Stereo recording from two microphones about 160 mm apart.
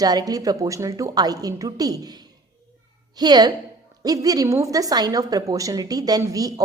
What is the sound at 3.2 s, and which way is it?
A woman's voice, 25° right (ahead or behind).